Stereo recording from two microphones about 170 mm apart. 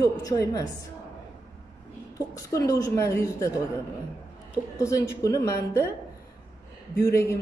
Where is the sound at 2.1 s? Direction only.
20° left (ahead or behind).